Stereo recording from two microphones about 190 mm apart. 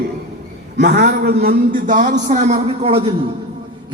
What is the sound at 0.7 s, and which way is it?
A man's voice, 55° right (ahead or behind).